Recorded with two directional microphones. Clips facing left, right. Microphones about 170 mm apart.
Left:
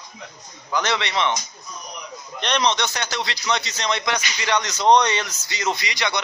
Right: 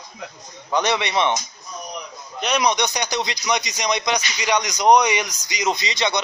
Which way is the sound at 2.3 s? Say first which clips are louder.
Right 2 dB; 10° right (ahead or behind).